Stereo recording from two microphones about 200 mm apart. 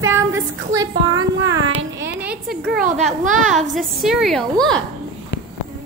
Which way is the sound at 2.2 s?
5° right (ahead or behind).